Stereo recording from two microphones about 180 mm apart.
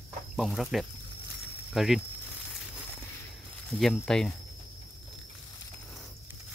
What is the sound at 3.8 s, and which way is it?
Speech, centre (ahead or behind).